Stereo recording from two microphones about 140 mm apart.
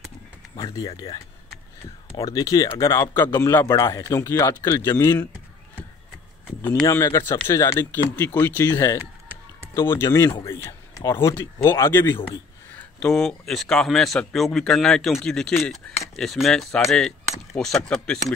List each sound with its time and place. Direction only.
0.6 s a man's voice: 25° left (ahead or behind)
6.7 s a man's voice: 25° left (ahead or behind)
13.0 s speech: 5° left (ahead or behind)